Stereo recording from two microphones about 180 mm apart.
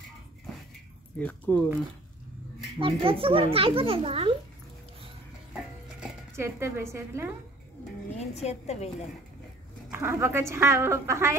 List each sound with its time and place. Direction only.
1.1 s speech: 5° left (ahead or behind)
2.8 s a child's voice: 30° right (ahead or behind)
5.5 s stir: 5° right (ahead or behind)
6.3 s a woman's voice: 15° right (ahead or behind)
8.2 s a woman's voice: 35° left (ahead or behind)
9.9 s a woman's voice: 15° right (ahead or behind)